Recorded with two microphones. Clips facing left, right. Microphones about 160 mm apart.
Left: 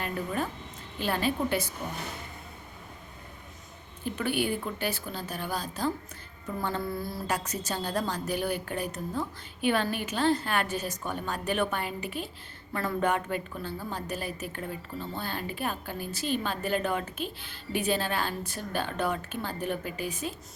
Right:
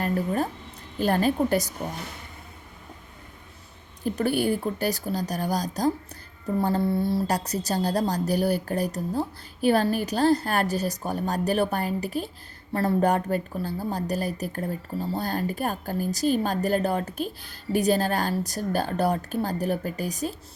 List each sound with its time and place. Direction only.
0.0 s a woman's voice: 40° right (ahead or behind)
4.0 s a woman's voice: 40° right (ahead or behind)